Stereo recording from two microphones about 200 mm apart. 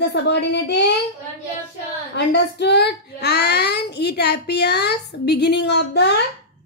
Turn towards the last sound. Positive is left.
turn(degrees=60)  # may be behind; listen again after turning